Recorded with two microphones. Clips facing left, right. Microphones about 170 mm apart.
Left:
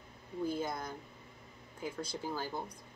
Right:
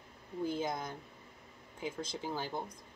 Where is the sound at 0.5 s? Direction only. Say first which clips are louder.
Right 1 dB; 20° right (ahead or behind).